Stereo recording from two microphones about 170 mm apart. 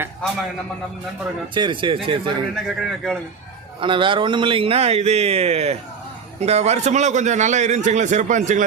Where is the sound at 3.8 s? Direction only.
30° right (ahead or behind); by 8.7 s 50° right (ahead or behind).